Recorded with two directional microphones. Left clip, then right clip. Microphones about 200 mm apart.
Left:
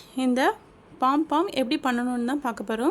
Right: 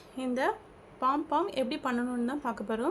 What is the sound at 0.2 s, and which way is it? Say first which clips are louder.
A woman's voice: left 7 dB; 55° left (ahead or behind).